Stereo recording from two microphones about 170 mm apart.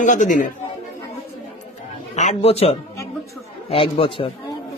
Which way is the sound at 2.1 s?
40° left (ahead or behind).